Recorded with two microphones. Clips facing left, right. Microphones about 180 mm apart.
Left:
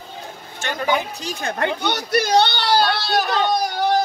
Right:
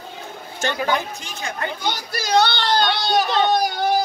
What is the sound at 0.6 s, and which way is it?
Speech, 40° right (ahead or behind).